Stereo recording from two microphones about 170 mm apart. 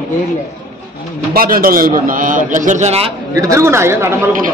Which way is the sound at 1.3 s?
60° right (ahead or behind).